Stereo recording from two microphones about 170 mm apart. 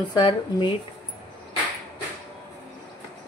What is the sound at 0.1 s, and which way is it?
Speech, 30° left (ahead or behind).